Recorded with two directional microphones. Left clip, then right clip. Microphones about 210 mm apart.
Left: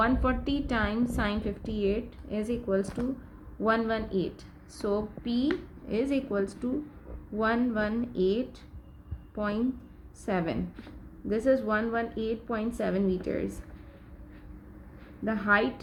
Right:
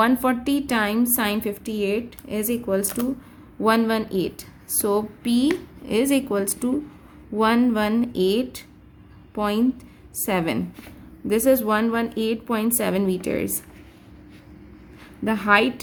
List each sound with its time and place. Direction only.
0.0 s a woman's voice: 30° right (ahead or behind)
15.2 s a woman's voice: 35° right (ahead or behind)